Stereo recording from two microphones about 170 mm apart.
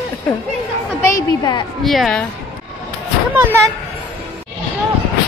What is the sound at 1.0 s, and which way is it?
Speech, 20° left (ahead or behind).